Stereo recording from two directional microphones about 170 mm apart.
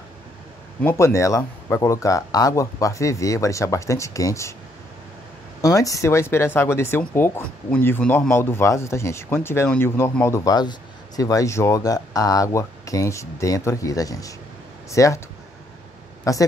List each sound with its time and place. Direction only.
0.8 s speech: 15° left (ahead or behind)
5.6 s speech: 20° left (ahead or behind)
16.3 s speech: 20° left (ahead or behind)